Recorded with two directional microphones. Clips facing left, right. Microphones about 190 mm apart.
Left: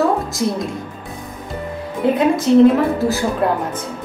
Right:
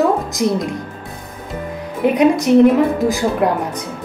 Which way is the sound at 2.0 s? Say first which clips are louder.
Right 2 dB; 15° right (ahead or behind).